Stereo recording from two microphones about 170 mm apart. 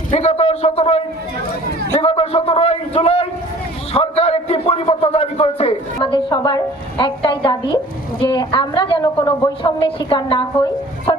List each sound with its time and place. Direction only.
0.1 s a man's voice: 40° left (ahead or behind)